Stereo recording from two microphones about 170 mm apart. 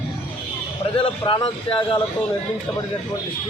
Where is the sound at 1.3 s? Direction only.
30° left (ahead or behind).